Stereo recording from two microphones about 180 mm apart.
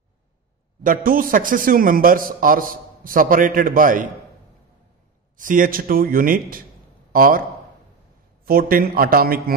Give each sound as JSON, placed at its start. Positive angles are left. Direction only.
{"t": 0.8, "sound": "a man's voice", "side_deg": -50}
{"t": 5.4, "sound": "a man's voice", "side_deg": -50}
{"t": 8.5, "sound": "a man's voice", "side_deg": -55}